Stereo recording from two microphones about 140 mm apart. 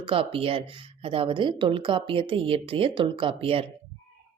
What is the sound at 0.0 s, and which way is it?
A woman's voice, 40° right (ahead or behind).